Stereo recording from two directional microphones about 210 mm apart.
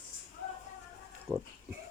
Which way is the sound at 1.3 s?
10° right (ahead or behind).